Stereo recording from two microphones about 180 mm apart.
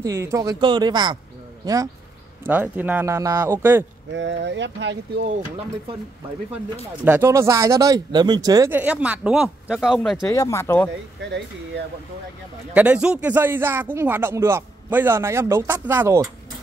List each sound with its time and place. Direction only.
0.0 s speech: 15° right (ahead or behind)
2.4 s speech: 10° right (ahead or behind)
4.1 s speech: 80° right
7.1 s speech: 15° right (ahead or behind)
8.7 s speech: 5° right (ahead or behind)
10.3 s speech: 15° left (ahead or behind)
12.7 s speech: 5° right (ahead or behind)